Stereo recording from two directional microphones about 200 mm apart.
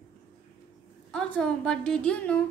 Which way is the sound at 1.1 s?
5° left (ahead or behind).